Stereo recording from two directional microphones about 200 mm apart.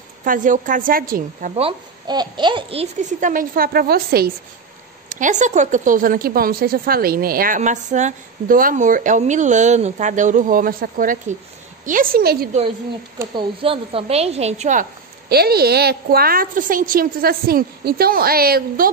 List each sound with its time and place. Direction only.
0.2 s a woman's voice: 40° right (ahead or behind)
1.5 s a woman's voice: 25° right (ahead or behind); by 4.3 s 50° right (ahead or behind)
5.1 s a woman's voice: 40° right (ahead or behind)
13.2 s a woman's voice: 20° right (ahead or behind); by 18.9 s 50° right (ahead or behind)